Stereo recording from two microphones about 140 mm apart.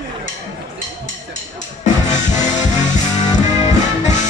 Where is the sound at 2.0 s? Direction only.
55° left (ahead or behind).